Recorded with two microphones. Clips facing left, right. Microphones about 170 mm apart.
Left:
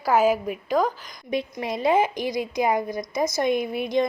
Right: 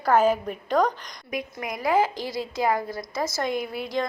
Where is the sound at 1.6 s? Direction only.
25° left (ahead or behind).